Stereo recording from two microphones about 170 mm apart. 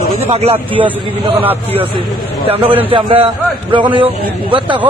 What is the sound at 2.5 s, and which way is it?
Speech, 35° right (ahead or behind).